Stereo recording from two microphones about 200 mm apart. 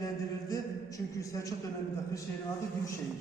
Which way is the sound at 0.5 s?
15° left (ahead or behind).